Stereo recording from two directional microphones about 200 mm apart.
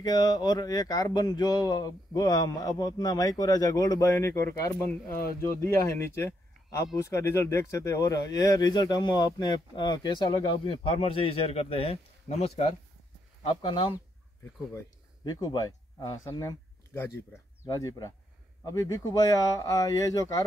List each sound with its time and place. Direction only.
0.0 s speech: 20° left (ahead or behind)